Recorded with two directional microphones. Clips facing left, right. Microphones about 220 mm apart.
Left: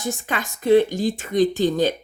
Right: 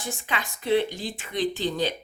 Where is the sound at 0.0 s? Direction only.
45° left (ahead or behind).